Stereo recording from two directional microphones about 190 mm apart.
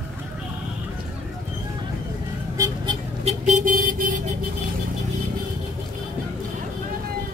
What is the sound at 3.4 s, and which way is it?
Vehicle, 40° right (ahead or behind).